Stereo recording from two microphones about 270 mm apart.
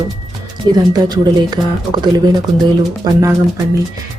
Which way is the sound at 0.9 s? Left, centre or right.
Centre.